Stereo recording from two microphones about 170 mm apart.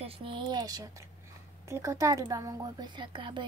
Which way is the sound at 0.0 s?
35° right (ahead or behind).